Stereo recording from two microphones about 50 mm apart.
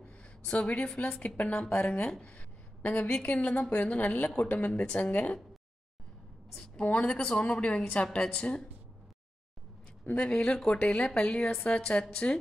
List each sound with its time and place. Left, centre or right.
0.0 s a sound: left
1.2 s a woman's voice: left
6.8 s speech: left
10.0 s speech: left